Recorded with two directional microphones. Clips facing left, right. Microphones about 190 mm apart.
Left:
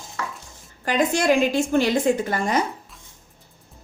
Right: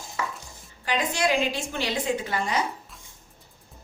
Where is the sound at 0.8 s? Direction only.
45° left (ahead or behind).